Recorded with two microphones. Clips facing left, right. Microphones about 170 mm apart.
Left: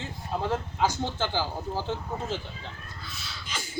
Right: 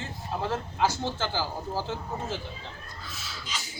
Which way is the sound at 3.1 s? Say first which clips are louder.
Right 2 dB; centre (ahead or behind).